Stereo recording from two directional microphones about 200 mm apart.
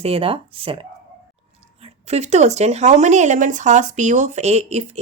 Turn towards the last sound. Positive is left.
turn(degrees=-35)  # may be behind; listen again after turning